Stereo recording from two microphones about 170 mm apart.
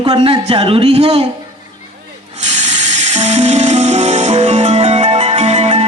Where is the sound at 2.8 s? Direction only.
45° right (ahead or behind).